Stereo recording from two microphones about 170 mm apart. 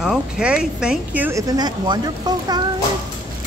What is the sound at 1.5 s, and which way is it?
Speech, 25° right (ahead or behind).